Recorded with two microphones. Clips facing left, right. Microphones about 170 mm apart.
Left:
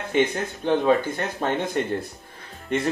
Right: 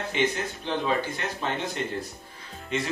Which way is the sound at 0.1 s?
50° left (ahead or behind).